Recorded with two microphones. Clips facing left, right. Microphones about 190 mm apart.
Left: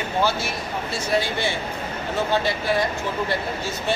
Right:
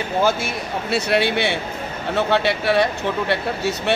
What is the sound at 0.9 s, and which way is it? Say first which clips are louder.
Speech: right 5 dB; 70° right (ahead or behind).